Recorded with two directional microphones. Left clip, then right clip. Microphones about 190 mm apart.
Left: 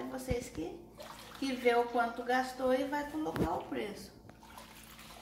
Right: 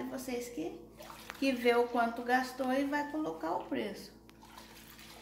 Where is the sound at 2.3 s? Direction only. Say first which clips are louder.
Left 1 dB; 35° right (ahead or behind).